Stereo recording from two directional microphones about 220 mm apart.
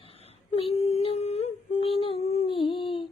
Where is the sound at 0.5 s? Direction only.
25° left (ahead or behind).